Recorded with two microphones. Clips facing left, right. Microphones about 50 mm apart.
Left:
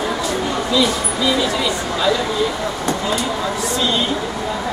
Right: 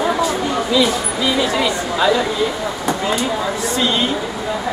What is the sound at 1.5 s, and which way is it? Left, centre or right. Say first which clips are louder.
Speech: right 2 dB; right.